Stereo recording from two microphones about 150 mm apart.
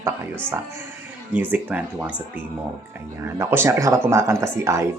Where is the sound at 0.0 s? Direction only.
15° right (ahead or behind).